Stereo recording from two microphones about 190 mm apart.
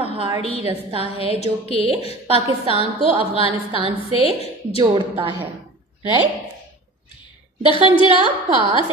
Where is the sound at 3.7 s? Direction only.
25° right (ahead or behind).